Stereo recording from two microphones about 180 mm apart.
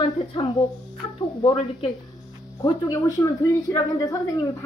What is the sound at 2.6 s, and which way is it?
A woman's voice, 20° left (ahead or behind).